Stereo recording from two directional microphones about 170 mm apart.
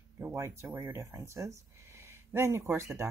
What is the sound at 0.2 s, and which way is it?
Speech, 15° right (ahead or behind).